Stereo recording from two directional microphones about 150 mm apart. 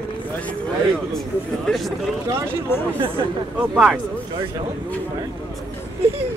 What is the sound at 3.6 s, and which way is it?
Speech, 10° right (ahead or behind).